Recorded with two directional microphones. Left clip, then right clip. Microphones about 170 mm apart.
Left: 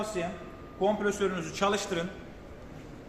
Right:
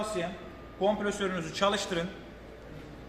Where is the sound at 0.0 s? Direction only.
Centre (ahead or behind).